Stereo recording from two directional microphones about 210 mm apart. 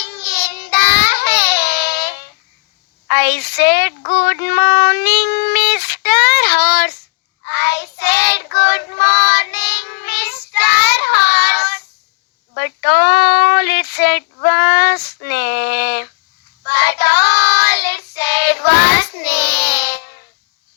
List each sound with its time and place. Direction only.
0.0 s child singing: 55° left (ahead or behind)